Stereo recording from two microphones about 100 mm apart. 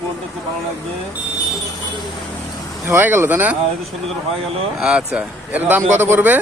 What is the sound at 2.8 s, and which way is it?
Speech, 20° right (ahead or behind).